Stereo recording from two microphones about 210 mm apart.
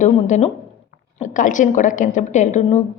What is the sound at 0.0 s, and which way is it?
A woman's voice, 35° left (ahead or behind).